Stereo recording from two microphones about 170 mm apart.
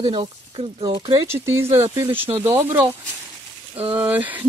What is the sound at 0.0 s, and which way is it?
Speech, 25° right (ahead or behind).